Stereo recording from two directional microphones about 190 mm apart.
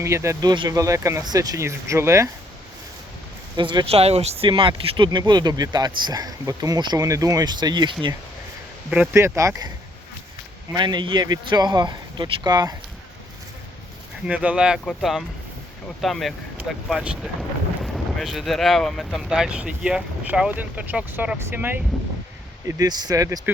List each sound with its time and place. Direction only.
0.0 s speech: 15° right (ahead or behind)
3.5 s speech: 25° right (ahead or behind)
9.1 s speech: 15° right (ahead or behind)
10.8 s speech: 25° right (ahead or behind)
14.3 s speech: 5° right (ahead or behind)
21.9 s speech: 5° left (ahead or behind)
22.6 s speech: 20° right (ahead or behind)